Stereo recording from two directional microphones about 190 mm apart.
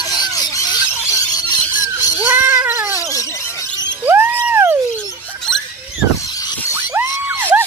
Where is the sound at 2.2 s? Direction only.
10° right (ahead or behind).